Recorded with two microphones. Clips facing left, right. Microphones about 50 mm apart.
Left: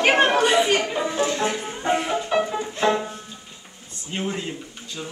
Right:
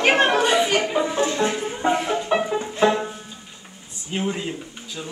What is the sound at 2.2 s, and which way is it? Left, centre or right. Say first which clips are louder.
Music: right 1 dB; centre.